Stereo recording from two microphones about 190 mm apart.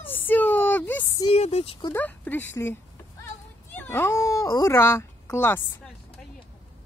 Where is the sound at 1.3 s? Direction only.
35° left (ahead or behind).